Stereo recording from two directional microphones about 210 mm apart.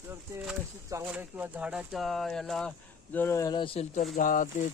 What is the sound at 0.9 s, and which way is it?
Speech, 10° right (ahead or behind).